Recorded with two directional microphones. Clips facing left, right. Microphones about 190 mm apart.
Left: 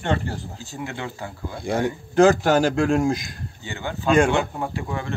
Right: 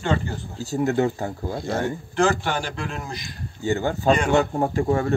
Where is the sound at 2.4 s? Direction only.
45° left (ahead or behind).